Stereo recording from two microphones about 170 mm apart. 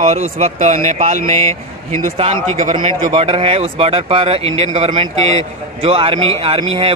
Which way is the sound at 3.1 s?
35° right (ahead or behind).